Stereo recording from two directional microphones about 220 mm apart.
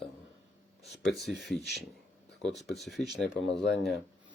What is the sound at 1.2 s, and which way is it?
Speech, centre (ahead or behind).